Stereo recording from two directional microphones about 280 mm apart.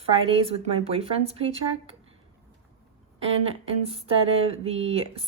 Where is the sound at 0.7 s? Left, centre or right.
Right.